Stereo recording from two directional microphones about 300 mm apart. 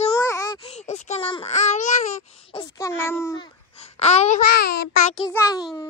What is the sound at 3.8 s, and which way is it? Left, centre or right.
Speech, left.